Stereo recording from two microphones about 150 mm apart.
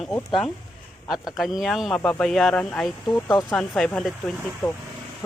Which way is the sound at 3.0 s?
25° left (ahead or behind).